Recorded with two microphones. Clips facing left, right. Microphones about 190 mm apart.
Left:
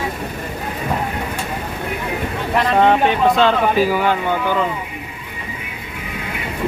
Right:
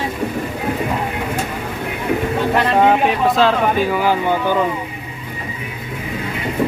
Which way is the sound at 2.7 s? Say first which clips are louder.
Left 1 dB; 5° right (ahead or behind).